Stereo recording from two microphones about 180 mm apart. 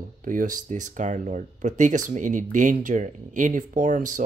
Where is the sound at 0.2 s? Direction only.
45° right (ahead or behind).